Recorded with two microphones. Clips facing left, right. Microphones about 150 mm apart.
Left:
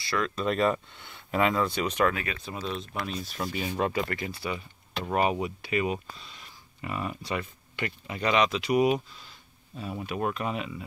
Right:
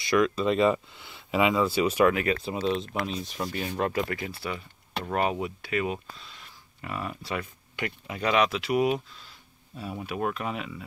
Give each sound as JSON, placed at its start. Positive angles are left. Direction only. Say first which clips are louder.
{"t": 0.0, "sound": "speech", "louder": "right 7 dB", "side_deg": -20}
{"t": 0.4, "sound": "speech", "louder": "right 3 dB", "side_deg": 0}
{"t": 2.4, "sound": "speech", "louder": "right 6 dB", "side_deg": -25}
{"t": 3.3, "sound": "speech", "louder": "left 1 dB", "side_deg": 5}